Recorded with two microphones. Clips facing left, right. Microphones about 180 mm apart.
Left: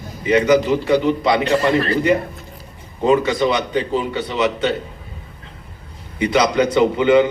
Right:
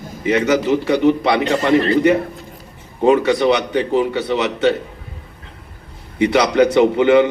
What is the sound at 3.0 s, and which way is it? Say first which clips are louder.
A man's voice: right 2 dB; 65° right (ahead or behind).